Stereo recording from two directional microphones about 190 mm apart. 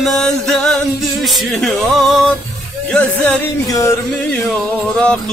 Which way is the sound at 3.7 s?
15° left (ahead or behind).